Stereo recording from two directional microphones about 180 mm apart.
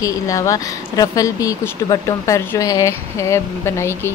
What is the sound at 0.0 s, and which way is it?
Speech, 20° left (ahead or behind).